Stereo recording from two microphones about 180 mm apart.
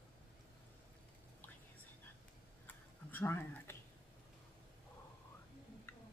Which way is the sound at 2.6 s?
10° left (ahead or behind).